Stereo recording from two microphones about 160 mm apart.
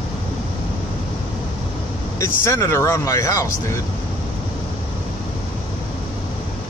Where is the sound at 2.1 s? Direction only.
15° left (ahead or behind).